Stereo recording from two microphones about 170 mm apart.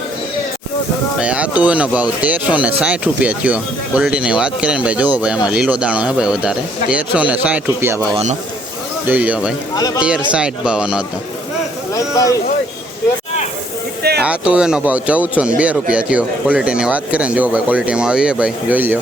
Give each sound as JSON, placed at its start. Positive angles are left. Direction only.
{"t": 1.2, "sound": "speech", "side_deg": -5}
{"t": 8.1, "sound": "a man's voice", "side_deg": -40}
{"t": 9.0, "sound": "speech", "side_deg": -10}
{"t": 9.7, "sound": "speech", "side_deg": 20}
{"t": 10.3, "sound": "speech", "side_deg": -5}
{"t": 11.9, "sound": "speech", "side_deg": 20}
{"t": 14.2, "sound": "speech", "side_deg": -5}